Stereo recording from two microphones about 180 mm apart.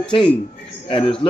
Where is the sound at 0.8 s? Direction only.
30° left (ahead or behind).